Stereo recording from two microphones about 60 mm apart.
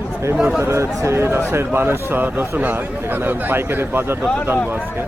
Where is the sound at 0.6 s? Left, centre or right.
Right.